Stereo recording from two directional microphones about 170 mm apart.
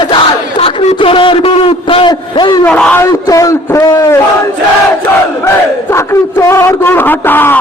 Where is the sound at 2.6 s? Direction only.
5° left (ahead or behind).